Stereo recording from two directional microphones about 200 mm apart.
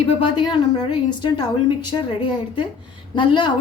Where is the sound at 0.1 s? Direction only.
25° left (ahead or behind).